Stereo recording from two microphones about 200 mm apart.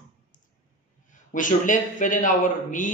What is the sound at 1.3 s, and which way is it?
A man's voice, 40° left (ahead or behind).